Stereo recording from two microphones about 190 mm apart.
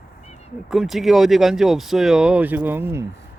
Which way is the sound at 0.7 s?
Centre (ahead or behind).